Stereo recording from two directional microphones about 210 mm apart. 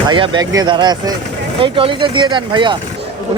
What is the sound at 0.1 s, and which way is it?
A man's voice, 20° right (ahead or behind).